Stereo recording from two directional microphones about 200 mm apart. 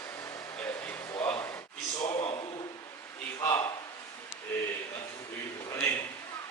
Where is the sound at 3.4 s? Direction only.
20° left (ahead or behind).